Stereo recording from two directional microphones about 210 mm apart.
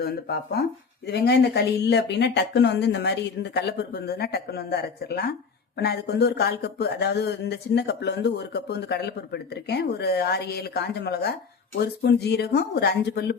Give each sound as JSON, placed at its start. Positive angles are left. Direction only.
{"t": 0.0, "sound": "speech", "side_deg": 50}